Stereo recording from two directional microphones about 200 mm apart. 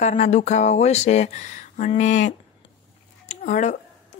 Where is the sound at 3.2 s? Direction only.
35° left (ahead or behind).